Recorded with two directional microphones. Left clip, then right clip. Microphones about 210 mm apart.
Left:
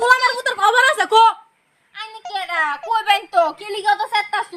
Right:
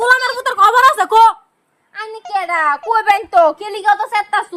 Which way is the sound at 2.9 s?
15° right (ahead or behind).